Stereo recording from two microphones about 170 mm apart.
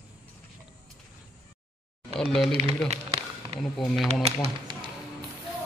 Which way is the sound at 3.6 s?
Centre (ahead or behind).